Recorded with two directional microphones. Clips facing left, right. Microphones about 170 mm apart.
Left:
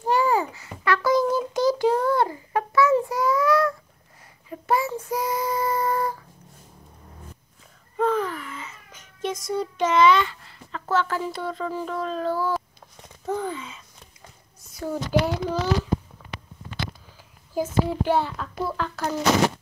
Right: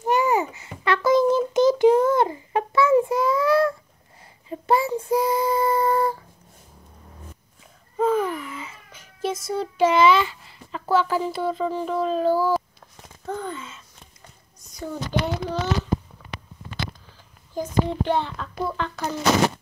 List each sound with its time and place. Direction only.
0.0 s babbling: 20° right (ahead or behind)
0.8 s child singing: 25° right (ahead or behind)
8.0 s a sound: 10° right (ahead or behind)
14.7 s a child's voice: 5° left (ahead or behind)
17.6 s a child's voice: 5° left (ahead or behind)